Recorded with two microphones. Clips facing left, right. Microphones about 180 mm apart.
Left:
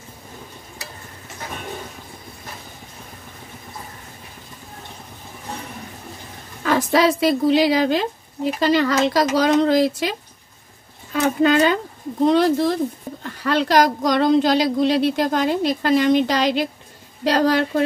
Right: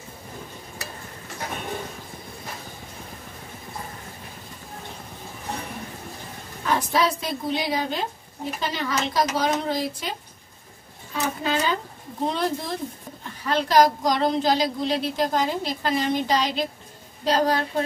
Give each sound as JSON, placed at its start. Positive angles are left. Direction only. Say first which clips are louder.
{"t": 6.6, "sound": "speech", "louder": "left 6 dB", "side_deg": 90}
{"t": 11.1, "sound": "a woman's voice", "louder": "left 9 dB", "side_deg": 70}
{"t": 17.2, "sound": "a woman's voice", "louder": "left 4 dB", "side_deg": 80}